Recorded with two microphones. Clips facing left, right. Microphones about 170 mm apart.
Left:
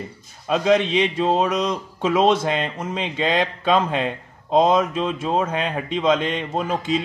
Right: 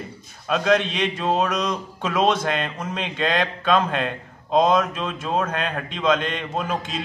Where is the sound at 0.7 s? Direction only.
5° left (ahead or behind).